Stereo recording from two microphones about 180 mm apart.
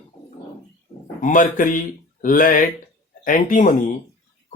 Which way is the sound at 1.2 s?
45° left (ahead or behind).